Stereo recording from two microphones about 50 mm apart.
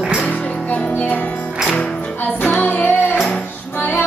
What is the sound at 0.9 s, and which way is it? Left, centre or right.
Music, left.